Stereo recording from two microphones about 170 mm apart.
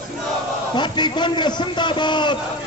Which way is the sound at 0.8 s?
25° left (ahead or behind).